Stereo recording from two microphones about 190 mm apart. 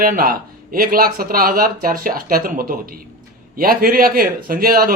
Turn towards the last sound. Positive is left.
turn(degrees=-50)  # may be behind; listen again after turning